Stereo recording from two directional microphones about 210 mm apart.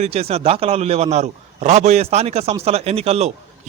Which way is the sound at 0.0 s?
30° right (ahead or behind).